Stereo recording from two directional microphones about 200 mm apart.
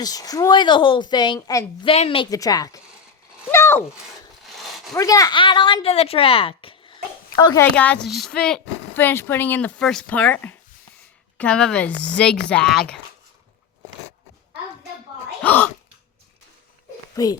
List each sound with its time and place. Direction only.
0.0 s a woman's voice: 20° left (ahead or behind)
3.5 s a sound: 10° left (ahead or behind)
4.4 s a sound: centre (ahead or behind)
4.9 s speech: 15° left (ahead or behind)
7.4 s speech: 15° left (ahead or behind)
15.4 s speech: 10° left (ahead or behind)
17.2 s speech: 15° left (ahead or behind)